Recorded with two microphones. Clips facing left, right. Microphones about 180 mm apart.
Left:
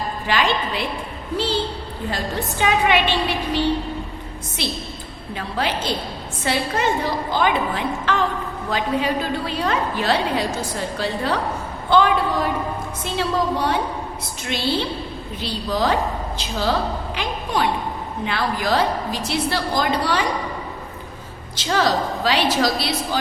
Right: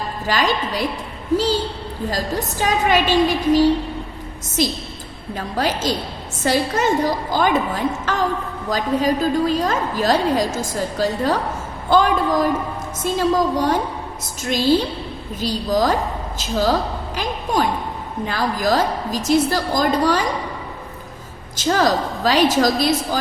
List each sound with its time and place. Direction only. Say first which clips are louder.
0.3 s a woman's voice: right 1 dB; 40° right (ahead or behind)
2.0 s a woman's voice: right 2 dB; 40° right (ahead or behind)
21.5 s a woman's voice: right 2 dB; 45° right (ahead or behind)